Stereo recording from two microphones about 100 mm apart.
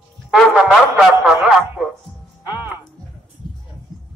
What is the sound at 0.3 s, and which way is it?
Music, 5° right (ahead or behind).